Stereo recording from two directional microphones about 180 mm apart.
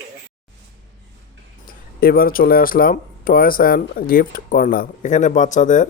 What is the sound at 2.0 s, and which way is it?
Speech, 55° left (ahead or behind).